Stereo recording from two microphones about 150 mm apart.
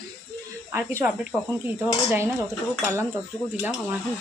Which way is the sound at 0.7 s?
20° right (ahead or behind).